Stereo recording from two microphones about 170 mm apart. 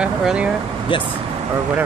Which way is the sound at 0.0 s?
5° right (ahead or behind).